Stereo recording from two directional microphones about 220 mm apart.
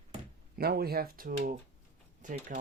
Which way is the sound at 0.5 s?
45° right (ahead or behind).